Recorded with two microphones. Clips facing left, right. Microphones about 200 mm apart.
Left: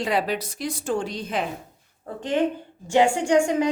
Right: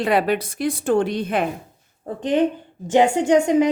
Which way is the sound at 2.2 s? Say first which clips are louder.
Right 4 dB; 20° right (ahead or behind).